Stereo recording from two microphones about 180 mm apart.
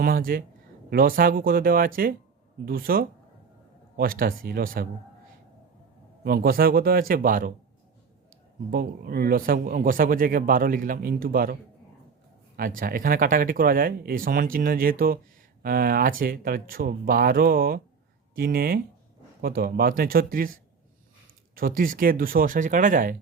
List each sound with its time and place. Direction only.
0.0 s a man's voice: 55° right (ahead or behind)
6.2 s speech: 55° right (ahead or behind)
8.7 s a man's voice: 55° right (ahead or behind)
12.5 s a man's voice: 50° right (ahead or behind)